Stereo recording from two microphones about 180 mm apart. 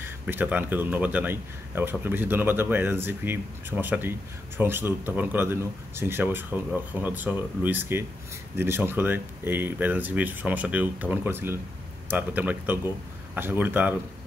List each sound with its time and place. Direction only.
0.0 s speech: 10° right (ahead or behind)